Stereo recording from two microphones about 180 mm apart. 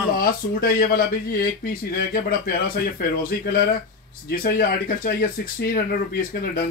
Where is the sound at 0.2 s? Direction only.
55° left (ahead or behind).